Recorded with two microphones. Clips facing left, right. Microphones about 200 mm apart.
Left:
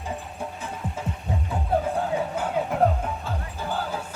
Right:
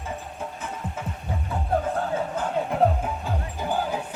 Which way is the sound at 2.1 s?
5° left (ahead or behind).